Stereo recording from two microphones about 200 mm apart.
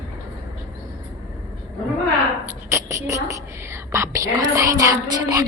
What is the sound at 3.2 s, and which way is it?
A woman's voice, 15° right (ahead or behind).